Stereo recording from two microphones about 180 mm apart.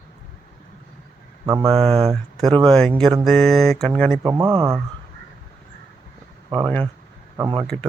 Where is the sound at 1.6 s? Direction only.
30° right (ahead or behind).